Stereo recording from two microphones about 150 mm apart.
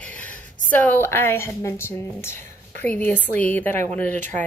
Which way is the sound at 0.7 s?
10° left (ahead or behind).